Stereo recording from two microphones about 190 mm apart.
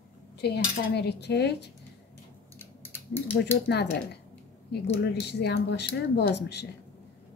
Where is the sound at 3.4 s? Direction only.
60° left (ahead or behind).